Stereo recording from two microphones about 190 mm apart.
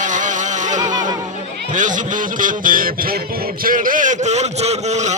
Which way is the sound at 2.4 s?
45° right (ahead or behind).